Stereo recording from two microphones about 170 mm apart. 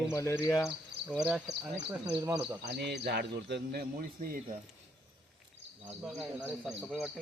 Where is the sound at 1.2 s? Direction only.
5° right (ahead or behind).